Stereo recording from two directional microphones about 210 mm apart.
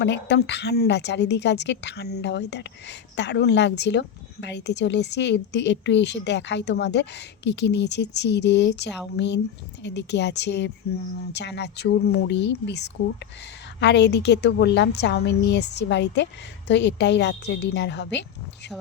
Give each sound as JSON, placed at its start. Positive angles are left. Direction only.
{"t": 0.0, "sound": "a woman's voice", "side_deg": 55}